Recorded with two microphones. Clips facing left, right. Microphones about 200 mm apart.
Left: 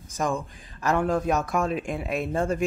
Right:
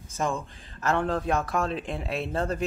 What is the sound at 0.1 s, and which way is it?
A man's voice, 15° left (ahead or behind).